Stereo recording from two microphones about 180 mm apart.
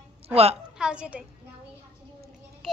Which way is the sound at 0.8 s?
5° right (ahead or behind).